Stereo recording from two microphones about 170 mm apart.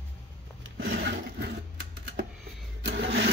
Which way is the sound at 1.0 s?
75° right (ahead or behind).